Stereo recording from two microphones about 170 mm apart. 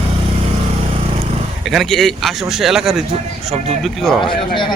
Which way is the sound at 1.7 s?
Centre (ahead or behind).